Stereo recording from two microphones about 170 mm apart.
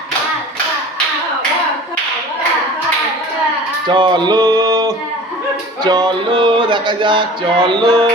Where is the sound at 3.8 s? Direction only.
25° right (ahead or behind).